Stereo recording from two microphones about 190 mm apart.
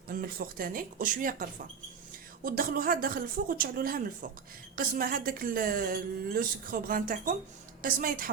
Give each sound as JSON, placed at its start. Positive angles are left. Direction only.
{"t": 0.1, "sound": "a woman's voice", "side_deg": -50}